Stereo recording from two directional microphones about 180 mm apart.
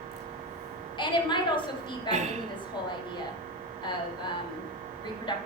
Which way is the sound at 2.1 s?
40° right (ahead or behind).